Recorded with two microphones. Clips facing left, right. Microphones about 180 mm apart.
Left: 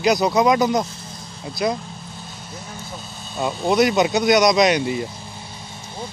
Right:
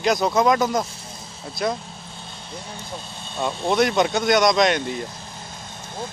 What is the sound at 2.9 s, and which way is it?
Speech, 5° left (ahead or behind).